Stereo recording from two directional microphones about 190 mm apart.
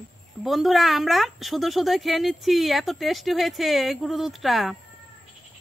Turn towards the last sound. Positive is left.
turn(degrees=0)  # may be behind; listen again after turning